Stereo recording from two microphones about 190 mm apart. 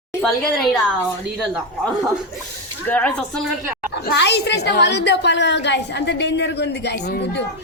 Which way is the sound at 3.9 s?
65° left (ahead or behind).